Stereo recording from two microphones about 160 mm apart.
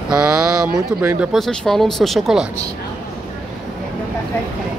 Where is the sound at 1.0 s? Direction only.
15° right (ahead or behind).